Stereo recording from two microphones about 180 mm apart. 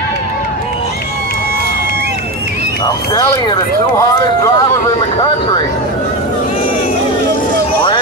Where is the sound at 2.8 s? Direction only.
20° left (ahead or behind).